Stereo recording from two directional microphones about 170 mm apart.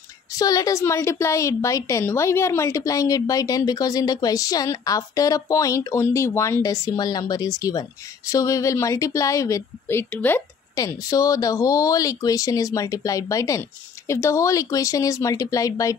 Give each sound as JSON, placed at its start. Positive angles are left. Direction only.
{"t": 0.3, "sound": "speech", "side_deg": 20}